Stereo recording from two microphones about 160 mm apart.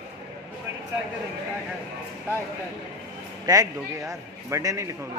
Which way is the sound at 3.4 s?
20° right (ahead or behind).